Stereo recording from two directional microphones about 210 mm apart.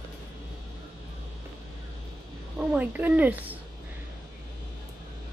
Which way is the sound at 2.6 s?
5° right (ahead or behind).